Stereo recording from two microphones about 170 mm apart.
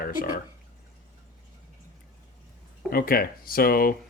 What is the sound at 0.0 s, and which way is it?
Speech, 55° left (ahead or behind).